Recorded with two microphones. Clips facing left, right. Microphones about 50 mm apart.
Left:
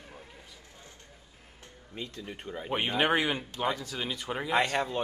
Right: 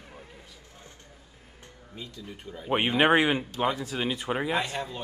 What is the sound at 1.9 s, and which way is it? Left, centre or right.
Speech, left.